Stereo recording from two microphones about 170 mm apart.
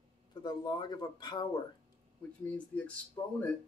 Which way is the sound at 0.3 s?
25° left (ahead or behind).